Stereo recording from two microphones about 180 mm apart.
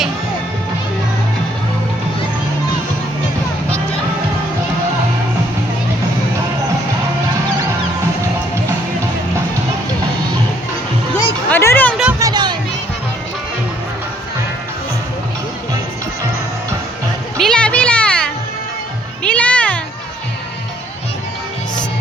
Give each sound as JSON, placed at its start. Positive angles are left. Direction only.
{"t": 11.4, "sound": "music", "side_deg": 10}
{"t": 12.2, "sound": "music", "side_deg": -25}
{"t": 17.3, "sound": "children playing", "side_deg": 5}
{"t": 19.2, "sound": "music", "side_deg": 5}